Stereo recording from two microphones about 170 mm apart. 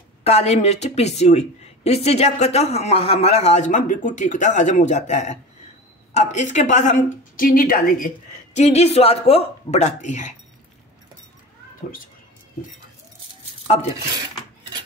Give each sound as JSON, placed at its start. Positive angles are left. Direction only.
{"t": 0.2, "sound": "a woman's voice", "side_deg": 40}